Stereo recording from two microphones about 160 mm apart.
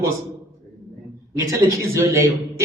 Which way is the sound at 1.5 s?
20° right (ahead or behind).